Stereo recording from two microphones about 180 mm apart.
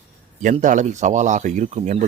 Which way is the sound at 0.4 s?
45° right (ahead or behind).